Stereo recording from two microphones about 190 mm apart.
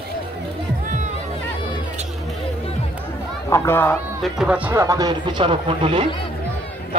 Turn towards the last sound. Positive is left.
turn(degrees=-30)  # may be behind; listen again after turning